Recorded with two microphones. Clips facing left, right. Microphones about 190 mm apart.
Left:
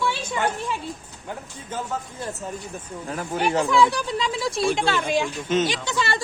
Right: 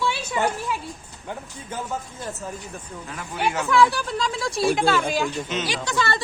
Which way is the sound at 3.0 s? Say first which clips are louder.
Left 3 dB; 40° left (ahead or behind).